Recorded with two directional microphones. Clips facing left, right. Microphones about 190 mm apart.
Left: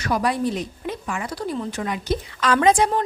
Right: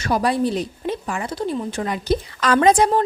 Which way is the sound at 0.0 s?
30° right (ahead or behind).